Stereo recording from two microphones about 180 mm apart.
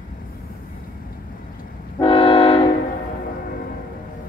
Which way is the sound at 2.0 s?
30° left (ahead or behind).